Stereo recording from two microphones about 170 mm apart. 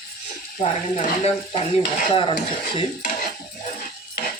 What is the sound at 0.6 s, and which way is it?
Speech, 40° left (ahead or behind).